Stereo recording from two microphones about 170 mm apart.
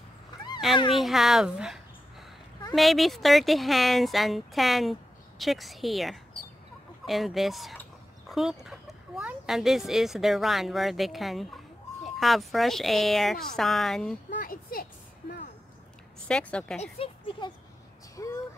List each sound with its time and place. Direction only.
0.9 s speech: centre (ahead or behind)
14.4 s speech: 55° left (ahead or behind)
16.3 s speech: 5° left (ahead or behind)
18.1 s a sound: 20° left (ahead or behind)